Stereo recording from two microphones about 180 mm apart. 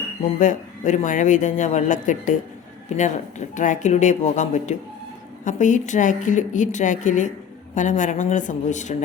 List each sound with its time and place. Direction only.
0.2 s speech: 45° left (ahead or behind)